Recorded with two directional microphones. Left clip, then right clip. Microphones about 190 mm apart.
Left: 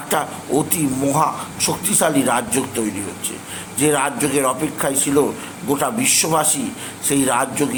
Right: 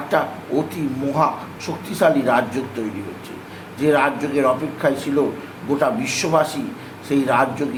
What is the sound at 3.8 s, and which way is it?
A man's voice, 25° left (ahead or behind).